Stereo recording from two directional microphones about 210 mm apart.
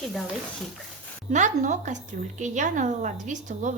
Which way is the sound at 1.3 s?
35° right (ahead or behind).